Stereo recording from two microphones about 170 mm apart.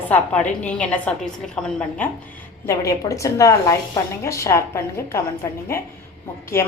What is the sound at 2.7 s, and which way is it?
A woman's voice, 20° left (ahead or behind).